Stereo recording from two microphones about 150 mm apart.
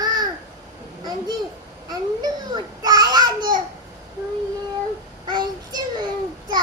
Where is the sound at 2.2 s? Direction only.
25° right (ahead or behind).